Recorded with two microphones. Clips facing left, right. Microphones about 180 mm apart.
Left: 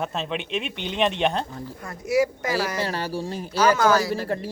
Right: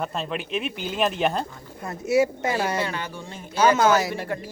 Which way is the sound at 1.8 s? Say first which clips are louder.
Right 1 dB; 25° right (ahead or behind).